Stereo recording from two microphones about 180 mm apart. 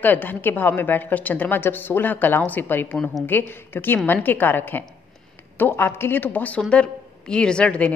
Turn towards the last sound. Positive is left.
turn(degrees=5)  # may be behind; listen again after turning